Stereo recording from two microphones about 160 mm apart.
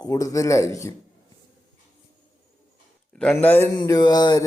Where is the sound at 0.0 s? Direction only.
20° left (ahead or behind).